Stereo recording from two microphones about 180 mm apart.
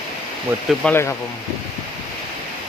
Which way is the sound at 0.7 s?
Centre (ahead or behind).